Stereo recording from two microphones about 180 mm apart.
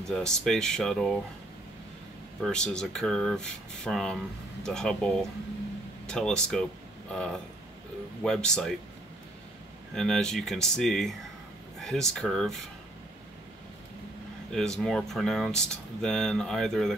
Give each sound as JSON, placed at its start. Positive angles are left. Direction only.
{"t": 0.0, "sound": "speech", "side_deg": 5}
{"t": 2.4, "sound": "speech", "side_deg": 5}
{"t": 9.9, "sound": "speech", "side_deg": 5}
{"t": 14.5, "sound": "speech", "side_deg": 5}